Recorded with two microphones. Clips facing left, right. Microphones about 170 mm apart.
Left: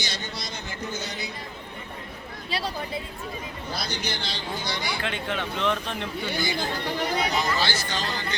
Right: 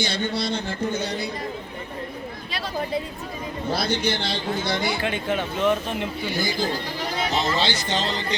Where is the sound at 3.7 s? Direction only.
55° right (ahead or behind).